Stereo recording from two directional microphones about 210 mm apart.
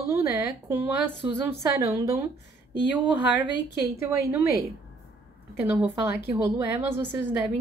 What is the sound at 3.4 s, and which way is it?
Speech, 55° left (ahead or behind).